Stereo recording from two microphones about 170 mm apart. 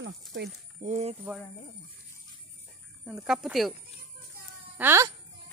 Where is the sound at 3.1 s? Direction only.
5° right (ahead or behind).